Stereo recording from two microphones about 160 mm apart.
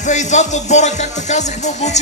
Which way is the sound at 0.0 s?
50° left (ahead or behind).